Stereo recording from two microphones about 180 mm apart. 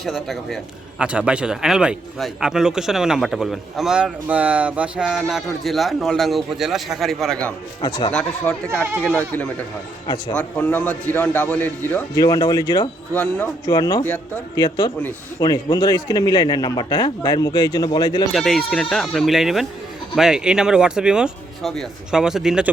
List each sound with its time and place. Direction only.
0.0 s a man's voice: centre (ahead or behind)
7.8 s a man's voice: 30° left (ahead or behind)
8.1 s a man's voice: 5° left (ahead or behind)
13.1 s a man's voice: 5° left (ahead or behind)
13.7 s a man's voice: 20° left (ahead or behind)
18.3 s a man's voice: centre (ahead or behind)